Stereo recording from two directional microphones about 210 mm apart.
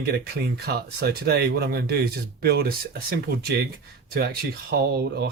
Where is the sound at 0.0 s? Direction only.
50° right (ahead or behind).